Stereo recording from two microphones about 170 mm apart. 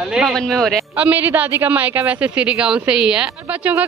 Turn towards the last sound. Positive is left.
turn(degrees=-5)  # may be behind; listen again after turning